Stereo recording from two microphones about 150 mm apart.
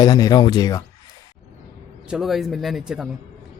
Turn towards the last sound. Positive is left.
turn(degrees=-5)  # may be behind; listen again after turning